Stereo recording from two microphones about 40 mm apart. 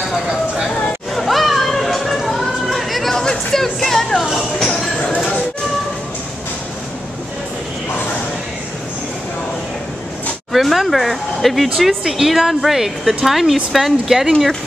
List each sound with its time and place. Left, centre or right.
0.7 s a sound: left
1.1 s music: centre
4.2 s speech: centre
10.5 s a woman's voice: centre